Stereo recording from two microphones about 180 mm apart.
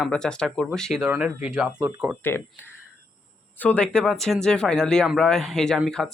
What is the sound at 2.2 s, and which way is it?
Speech, 10° left (ahead or behind).